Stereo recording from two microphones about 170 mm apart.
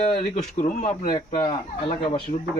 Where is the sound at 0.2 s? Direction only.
45° left (ahead or behind).